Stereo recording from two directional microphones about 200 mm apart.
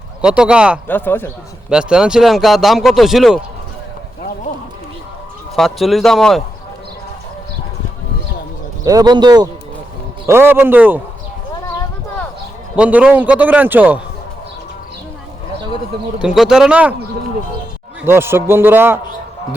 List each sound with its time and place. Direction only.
0.2 s speech: 5° right (ahead or behind)
0.9 s a man's voice: 10° left (ahead or behind)
1.7 s speech: 5° right (ahead or behind)
5.5 s speech: centre (ahead or behind)
8.8 s a man's voice: 15° right (ahead or behind)
12.7 s a man's voice: 5° right (ahead or behind)
16.1 s speech: 5° right (ahead or behind)
18.0 s a man's voice: 10° right (ahead or behind)